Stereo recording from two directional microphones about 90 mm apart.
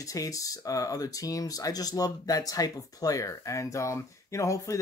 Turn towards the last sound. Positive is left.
turn(degrees=35)  # may be behind; listen again after turning